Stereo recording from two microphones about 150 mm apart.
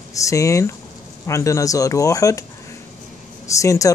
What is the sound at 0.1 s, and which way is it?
Speech, 20° left (ahead or behind).